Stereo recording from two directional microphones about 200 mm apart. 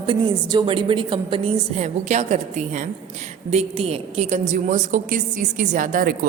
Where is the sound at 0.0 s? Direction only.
25° right (ahead or behind).